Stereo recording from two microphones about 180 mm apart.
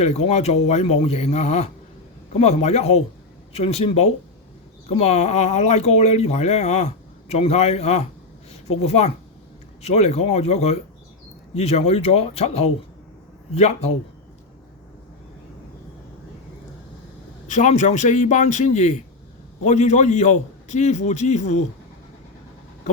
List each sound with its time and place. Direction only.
0.0 s speech: 35° left (ahead or behind)
17.5 s speech: 40° left (ahead or behind)